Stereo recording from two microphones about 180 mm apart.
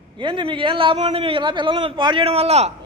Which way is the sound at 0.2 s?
25° right (ahead or behind).